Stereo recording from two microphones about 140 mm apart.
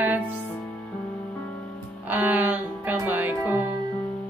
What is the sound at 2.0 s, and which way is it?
Music, 10° right (ahead or behind).